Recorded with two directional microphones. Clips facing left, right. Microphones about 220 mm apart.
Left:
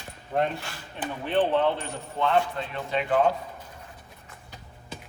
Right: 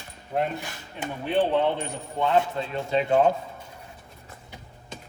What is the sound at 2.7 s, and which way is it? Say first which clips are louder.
Speech: right 4 dB; 25° right (ahead or behind).